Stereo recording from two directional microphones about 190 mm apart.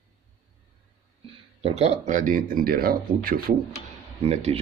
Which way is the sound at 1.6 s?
35° right (ahead or behind).